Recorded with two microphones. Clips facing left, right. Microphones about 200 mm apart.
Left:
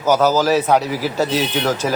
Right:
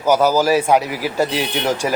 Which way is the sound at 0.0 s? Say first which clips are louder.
Even; 10° right (ahead or behind).